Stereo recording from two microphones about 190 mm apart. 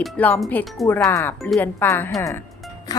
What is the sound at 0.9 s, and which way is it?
Speech, 10° left (ahead or behind).